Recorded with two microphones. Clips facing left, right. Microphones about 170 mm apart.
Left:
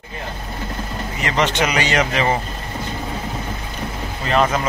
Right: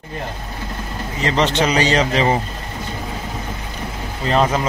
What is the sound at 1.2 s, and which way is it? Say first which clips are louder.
A man's voice: right 2 dB; 30° right (ahead or behind).